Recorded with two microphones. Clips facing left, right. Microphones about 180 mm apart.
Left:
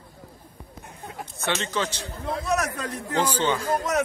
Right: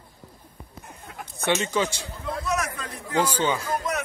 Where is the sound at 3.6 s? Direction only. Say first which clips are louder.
Left 3 dB; 35° left (ahead or behind).